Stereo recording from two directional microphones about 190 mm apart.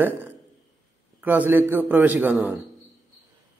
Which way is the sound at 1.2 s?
10° right (ahead or behind).